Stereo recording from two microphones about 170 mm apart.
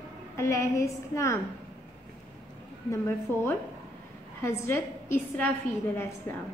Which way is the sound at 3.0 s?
15° left (ahead or behind).